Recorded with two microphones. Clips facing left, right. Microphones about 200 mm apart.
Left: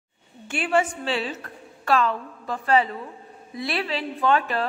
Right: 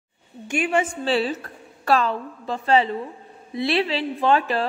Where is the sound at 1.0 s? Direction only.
35° right (ahead or behind).